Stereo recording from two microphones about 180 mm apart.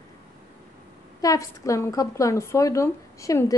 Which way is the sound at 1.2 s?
20° left (ahead or behind).